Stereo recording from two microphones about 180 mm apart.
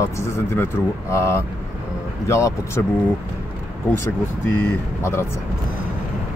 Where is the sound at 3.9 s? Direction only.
15° left (ahead or behind).